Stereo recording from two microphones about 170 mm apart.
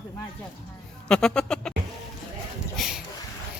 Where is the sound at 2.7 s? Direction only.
Centre (ahead or behind).